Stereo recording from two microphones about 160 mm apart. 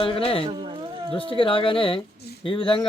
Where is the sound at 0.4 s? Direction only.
30° right (ahead or behind).